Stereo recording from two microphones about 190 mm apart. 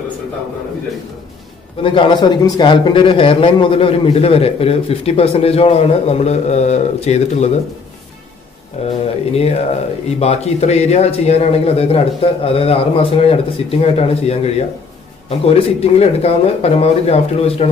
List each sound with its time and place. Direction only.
1.8 s speech: 25° left (ahead or behind)
8.8 s speech: 35° left (ahead or behind)